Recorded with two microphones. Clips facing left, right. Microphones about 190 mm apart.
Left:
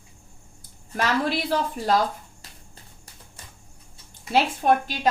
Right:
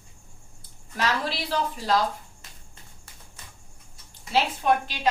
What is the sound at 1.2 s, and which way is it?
Speech, 55° left (ahead or behind).